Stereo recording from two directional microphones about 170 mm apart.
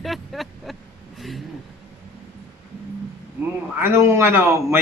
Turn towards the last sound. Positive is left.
turn(degrees=-15)  # may be behind; listen again after turning